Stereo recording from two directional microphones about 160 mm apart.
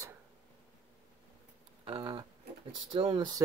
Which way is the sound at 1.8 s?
30° right (ahead or behind).